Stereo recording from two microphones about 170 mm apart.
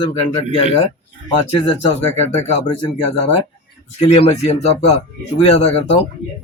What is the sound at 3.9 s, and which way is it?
Speech, 40° left (ahead or behind).